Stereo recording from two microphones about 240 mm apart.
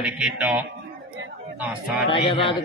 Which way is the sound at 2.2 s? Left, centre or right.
Left.